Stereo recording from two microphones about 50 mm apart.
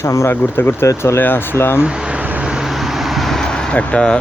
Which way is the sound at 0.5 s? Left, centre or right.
Left.